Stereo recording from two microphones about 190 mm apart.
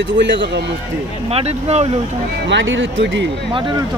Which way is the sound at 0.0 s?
70° right (ahead or behind).